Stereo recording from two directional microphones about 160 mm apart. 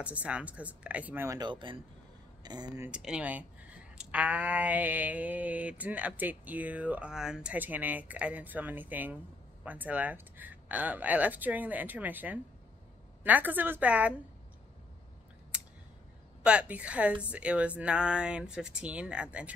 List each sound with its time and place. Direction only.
0.0 s speech: 10° right (ahead or behind); by 2.8 s 25° right (ahead or behind)
2.8 s speech: 5° right (ahead or behind)
15.5 s a sound: 5° right (ahead or behind)
16.4 s speech: 10° right (ahead or behind)